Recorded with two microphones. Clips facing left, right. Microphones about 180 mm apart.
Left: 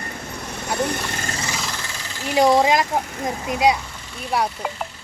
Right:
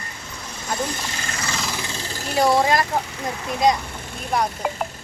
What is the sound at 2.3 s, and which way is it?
Speech, 15° left (ahead or behind).